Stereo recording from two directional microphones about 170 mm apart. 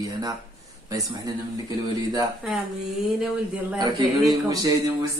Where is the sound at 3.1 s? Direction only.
5° right (ahead or behind).